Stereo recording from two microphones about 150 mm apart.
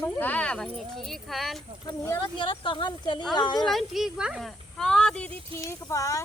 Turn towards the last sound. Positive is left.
turn(degrees=20)  # may be behind; listen again after turning